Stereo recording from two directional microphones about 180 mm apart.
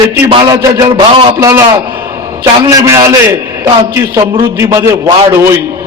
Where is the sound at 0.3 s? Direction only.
20° right (ahead or behind).